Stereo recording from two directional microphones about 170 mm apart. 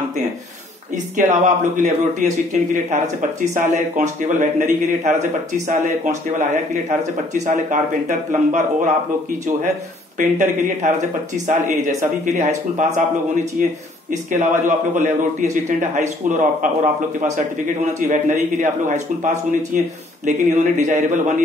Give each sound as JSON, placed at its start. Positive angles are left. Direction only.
{"t": 0.9, "sound": "a man's voice", "side_deg": -50}
{"t": 10.1, "sound": "a man's voice", "side_deg": -45}
{"t": 15.0, "sound": "a man's voice", "side_deg": -50}